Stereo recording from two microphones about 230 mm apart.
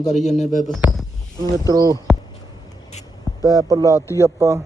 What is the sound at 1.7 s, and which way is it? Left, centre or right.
Speech, centre.